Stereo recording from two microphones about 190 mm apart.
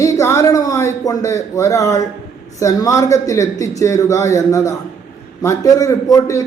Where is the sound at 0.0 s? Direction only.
15° left (ahead or behind).